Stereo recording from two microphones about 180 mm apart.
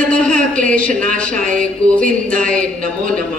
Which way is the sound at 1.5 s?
5° left (ahead or behind).